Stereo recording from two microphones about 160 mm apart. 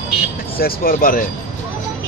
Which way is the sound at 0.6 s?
65° left (ahead or behind).